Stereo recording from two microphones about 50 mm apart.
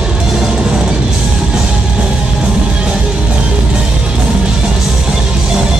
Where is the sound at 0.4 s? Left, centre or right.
Centre.